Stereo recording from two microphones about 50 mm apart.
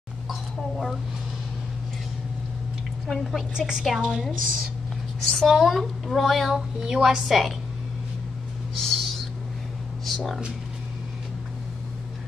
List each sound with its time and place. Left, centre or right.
0.3 s a sound: centre
3.1 s a child's voice: centre
3.5 s a woman's voice: centre
3.8 s a child's voice: centre
5.2 s a child's voice: centre
8.7 s owl: centre
10.0 s speech: centre